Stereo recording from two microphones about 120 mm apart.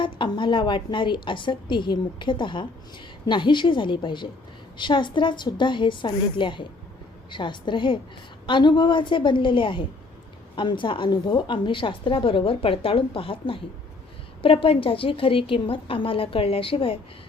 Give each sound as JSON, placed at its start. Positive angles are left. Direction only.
{"t": 0.0, "sound": "a woman's voice", "side_deg": 40}